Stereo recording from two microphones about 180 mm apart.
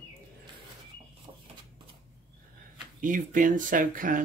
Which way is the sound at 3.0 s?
50° right (ahead or behind).